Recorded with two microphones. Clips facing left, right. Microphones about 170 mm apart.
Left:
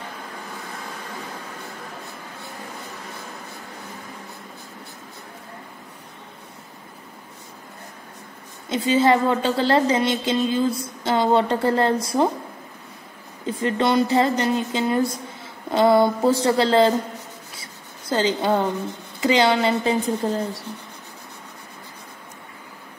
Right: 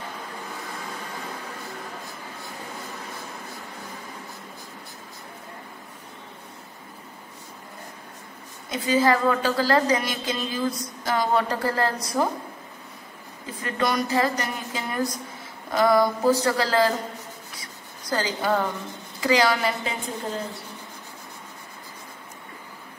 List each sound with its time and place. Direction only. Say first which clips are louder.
8.6 s a woman's voice: left 3 dB; 25° left (ahead or behind)
13.5 s a woman's voice: left 5 dB; 25° left (ahead or behind)
17.6 s writing: left 1 dB; 25° left (ahead or behind)
19.2 s a woman's voice: left 3 dB; 25° left (ahead or behind)